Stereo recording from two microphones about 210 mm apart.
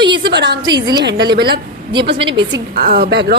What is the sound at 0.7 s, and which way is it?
Speech, 20° right (ahead or behind).